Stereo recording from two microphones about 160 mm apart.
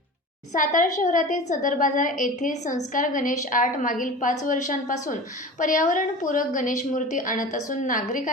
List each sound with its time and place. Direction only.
0.5 s a woman's voice: 55° left (ahead or behind)